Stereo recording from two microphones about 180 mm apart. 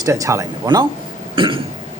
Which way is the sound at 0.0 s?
15° right (ahead or behind).